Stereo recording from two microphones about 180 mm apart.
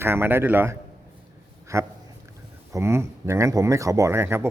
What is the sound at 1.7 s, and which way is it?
Speech, 15° right (ahead or behind).